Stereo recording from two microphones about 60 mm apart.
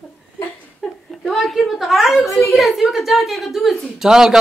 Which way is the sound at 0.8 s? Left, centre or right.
Centre.